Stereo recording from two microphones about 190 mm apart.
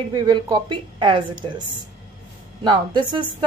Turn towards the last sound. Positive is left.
turn(degrees=-25)  # may be behind; listen again after turning